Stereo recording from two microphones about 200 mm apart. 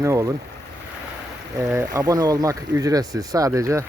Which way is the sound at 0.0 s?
15° right (ahead or behind).